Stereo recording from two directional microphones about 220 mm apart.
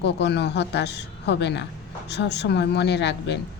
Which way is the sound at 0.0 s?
50° left (ahead or behind).